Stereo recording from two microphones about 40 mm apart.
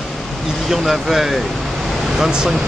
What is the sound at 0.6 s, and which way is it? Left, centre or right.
Speech, centre.